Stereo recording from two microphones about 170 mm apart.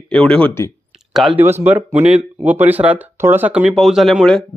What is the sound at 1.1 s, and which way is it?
Speech, centre (ahead or behind).